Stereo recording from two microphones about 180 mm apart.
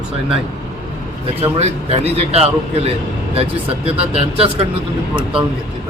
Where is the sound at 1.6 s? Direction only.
35° right (ahead or behind).